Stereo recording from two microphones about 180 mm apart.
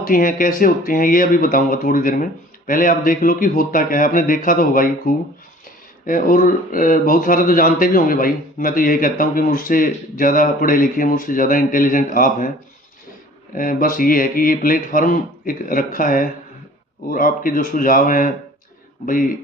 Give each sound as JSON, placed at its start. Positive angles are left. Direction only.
{"t": 0.0, "sound": "speech", "side_deg": 50}
{"t": 13.6, "sound": "speech", "side_deg": 50}